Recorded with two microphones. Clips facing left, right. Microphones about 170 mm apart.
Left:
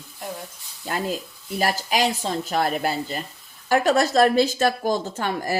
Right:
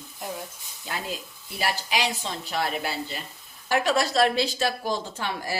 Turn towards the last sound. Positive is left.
turn(degrees=50)  # may be behind; listen again after turning